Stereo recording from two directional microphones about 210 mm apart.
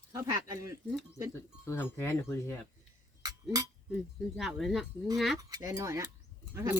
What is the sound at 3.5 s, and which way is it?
Speech, 20° right (ahead or behind).